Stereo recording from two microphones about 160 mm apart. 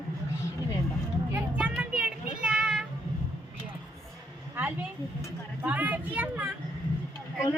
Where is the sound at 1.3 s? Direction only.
10° right (ahead or behind).